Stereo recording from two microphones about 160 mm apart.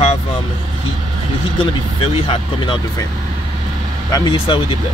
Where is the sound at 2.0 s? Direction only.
35° left (ahead or behind).